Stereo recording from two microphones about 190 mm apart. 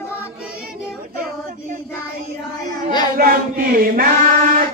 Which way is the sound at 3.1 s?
50° right (ahead or behind).